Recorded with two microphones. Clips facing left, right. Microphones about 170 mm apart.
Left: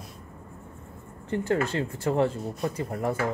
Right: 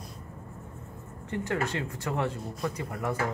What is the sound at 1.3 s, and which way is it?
Speech, 30° left (ahead or behind).